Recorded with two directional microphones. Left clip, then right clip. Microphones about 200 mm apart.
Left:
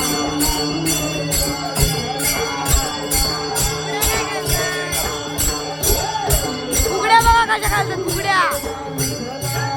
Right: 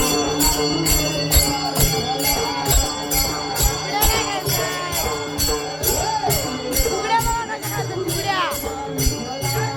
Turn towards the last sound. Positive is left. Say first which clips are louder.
# left 9 dB
turn(degrees=20)  # may be behind; listen again after turning